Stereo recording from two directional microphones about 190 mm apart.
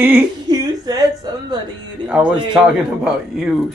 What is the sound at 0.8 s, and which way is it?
Speech, 20° right (ahead or behind).